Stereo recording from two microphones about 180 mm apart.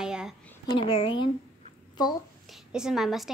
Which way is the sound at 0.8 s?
30° left (ahead or behind).